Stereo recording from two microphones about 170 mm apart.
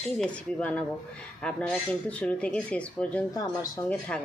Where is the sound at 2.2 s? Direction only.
5° left (ahead or behind).